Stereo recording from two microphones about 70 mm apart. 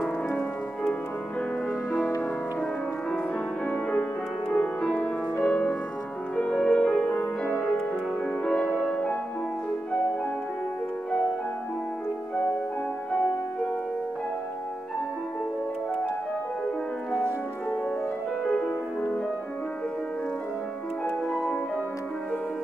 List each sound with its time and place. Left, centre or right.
4.5 s music: centre
8.5 s music: centre